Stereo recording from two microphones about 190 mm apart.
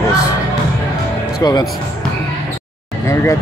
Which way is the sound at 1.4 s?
20° left (ahead or behind).